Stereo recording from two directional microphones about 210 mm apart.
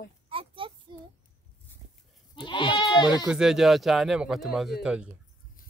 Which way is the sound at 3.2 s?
5° right (ahead or behind).